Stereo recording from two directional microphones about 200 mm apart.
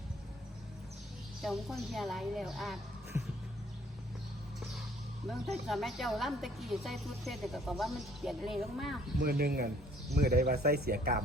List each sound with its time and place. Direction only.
1.4 s a woman's voice: centre (ahead or behind)
3.1 s music: 15° right (ahead or behind)
5.3 s a woman's voice: centre (ahead or behind)
9.1 s speech: 50° right (ahead or behind)